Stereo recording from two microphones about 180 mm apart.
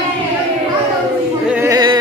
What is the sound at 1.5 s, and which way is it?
Yodeling, 20° right (ahead or behind).